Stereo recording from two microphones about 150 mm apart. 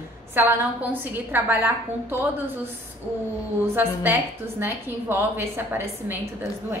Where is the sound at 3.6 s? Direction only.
15° right (ahead or behind).